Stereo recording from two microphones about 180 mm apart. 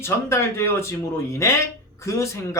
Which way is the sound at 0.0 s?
15° left (ahead or behind).